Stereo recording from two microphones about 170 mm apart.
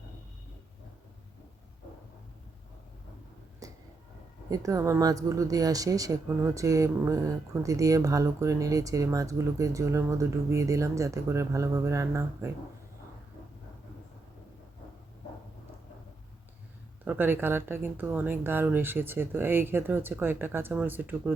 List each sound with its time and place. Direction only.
3.6 s a sound: 20° right (ahead or behind)
4.4 s speech: 20° right (ahead or behind)
17.1 s speech: 10° right (ahead or behind)